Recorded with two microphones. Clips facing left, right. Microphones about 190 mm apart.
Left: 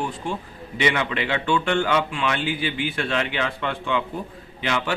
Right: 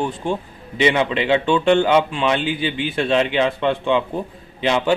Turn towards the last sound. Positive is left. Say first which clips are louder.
# right 7 dB
turn(degrees=-25)  # may be behind; listen again after turning